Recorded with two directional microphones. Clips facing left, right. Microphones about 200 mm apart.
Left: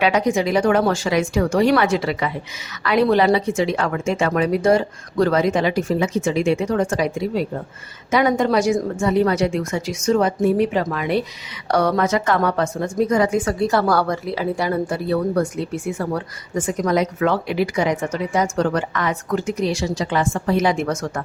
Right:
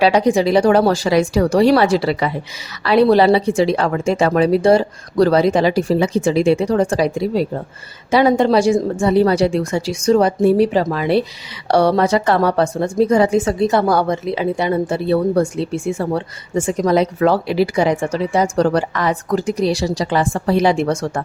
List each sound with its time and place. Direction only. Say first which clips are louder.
0.0 s a woman's voice: right 4 dB; 35° right (ahead or behind)